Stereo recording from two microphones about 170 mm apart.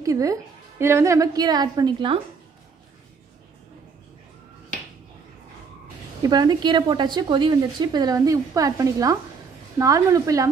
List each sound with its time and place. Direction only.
0.0 s a woman's voice: 20° right (ahead or behind)
6.2 s a woman's voice: 25° right (ahead or behind)